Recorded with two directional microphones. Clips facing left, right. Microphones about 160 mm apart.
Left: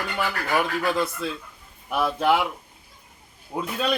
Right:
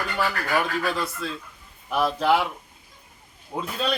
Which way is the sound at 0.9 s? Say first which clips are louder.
Left 3 dB; 20° left (ahead or behind).